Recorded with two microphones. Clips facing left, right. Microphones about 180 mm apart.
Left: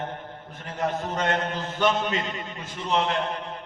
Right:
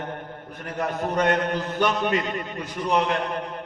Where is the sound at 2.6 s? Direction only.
25° left (ahead or behind).